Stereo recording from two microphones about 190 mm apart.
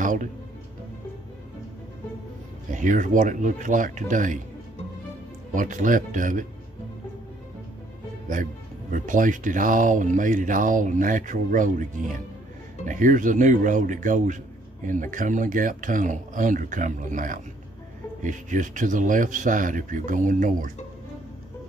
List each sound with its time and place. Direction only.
0.0 s speech: 45° right (ahead or behind)
2.7 s speech: 45° right (ahead or behind)
5.5 s speech: 45° right (ahead or behind)
8.9 s speech: 45° right (ahead or behind)
12.8 s speech: 45° right (ahead or behind)